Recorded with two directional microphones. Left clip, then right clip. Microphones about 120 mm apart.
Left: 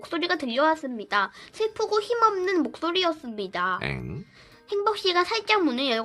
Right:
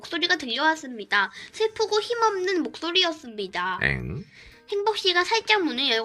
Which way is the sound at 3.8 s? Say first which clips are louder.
Right 7 dB; 25° right (ahead or behind).